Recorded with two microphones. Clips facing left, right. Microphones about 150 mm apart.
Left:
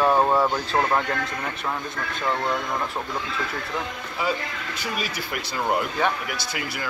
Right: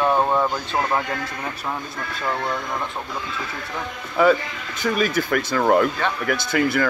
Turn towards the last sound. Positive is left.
turn(degrees=-50)  # may be behind; listen again after turning